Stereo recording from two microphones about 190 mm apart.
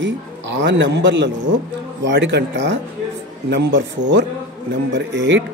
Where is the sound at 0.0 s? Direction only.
70° right (ahead or behind).